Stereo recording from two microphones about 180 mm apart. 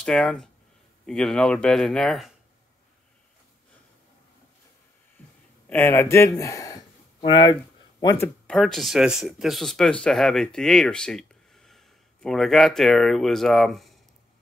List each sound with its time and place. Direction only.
0.0 s a man's voice: 5° left (ahead or behind)
5.2 s a sound: 10° left (ahead or behind)
5.7 s speech: 10° left (ahead or behind)
8.5 s speech: centre (ahead or behind)